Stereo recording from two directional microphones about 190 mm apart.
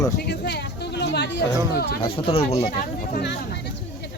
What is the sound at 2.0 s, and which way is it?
Speech, 30° left (ahead or behind).